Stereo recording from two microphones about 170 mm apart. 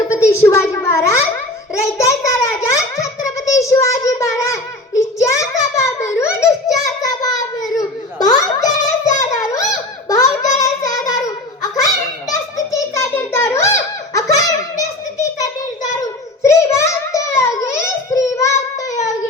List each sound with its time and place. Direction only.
0.1 s a sound: 15° left (ahead or behind)
10.1 s child singing: 20° left (ahead or behind)
12.5 s giggle: 20° left (ahead or behind)
15.4 s child singing: 20° left (ahead or behind)